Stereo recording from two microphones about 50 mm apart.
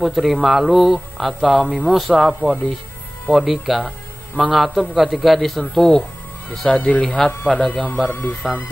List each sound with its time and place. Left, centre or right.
0.0 s a man's voice: centre
1.7 s speech: right
2.0 s a man's voice: centre
7.8 s speech: left